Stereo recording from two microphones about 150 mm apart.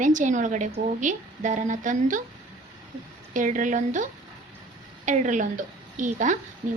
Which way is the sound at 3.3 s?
60° right (ahead or behind).